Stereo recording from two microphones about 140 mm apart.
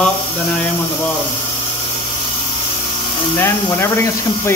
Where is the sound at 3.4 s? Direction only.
15° left (ahead or behind).